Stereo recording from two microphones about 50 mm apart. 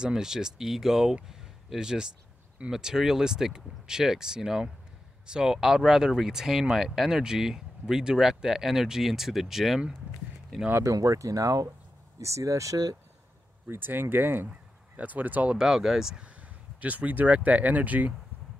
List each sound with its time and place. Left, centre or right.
0.0 s speech: centre
10.8 s speech: right
13.7 s speech: right
14.5 s speech: right
15.5 s speech: centre
16.2 s speech: right